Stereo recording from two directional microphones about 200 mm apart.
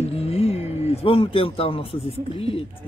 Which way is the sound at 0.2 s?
30° left (ahead or behind).